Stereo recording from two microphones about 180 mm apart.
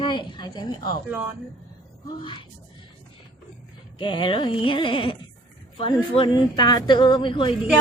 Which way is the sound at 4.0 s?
25° left (ahead or behind).